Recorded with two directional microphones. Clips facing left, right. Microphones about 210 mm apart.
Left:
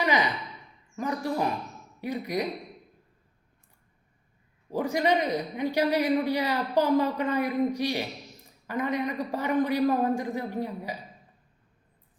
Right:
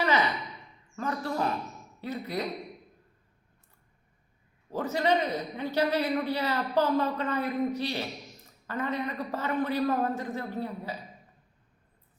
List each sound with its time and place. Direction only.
0.0 s a sound: 15° left (ahead or behind)
0.9 s a man's voice: 15° left (ahead or behind)
4.7 s a man's voice: 15° left (ahead or behind)